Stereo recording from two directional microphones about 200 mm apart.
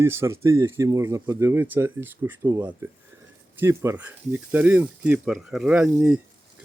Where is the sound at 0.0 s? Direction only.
15° right (ahead or behind).